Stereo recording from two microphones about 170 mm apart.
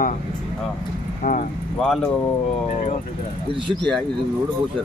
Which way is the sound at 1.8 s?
5° left (ahead or behind).